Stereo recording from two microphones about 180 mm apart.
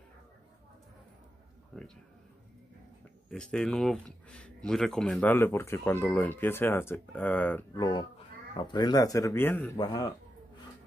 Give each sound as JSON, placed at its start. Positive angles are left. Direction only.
{"t": 1.7, "sound": "speech", "side_deg": 5}
{"t": 3.3, "sound": "speech", "side_deg": 5}
{"t": 7.7, "sound": "speech", "side_deg": 20}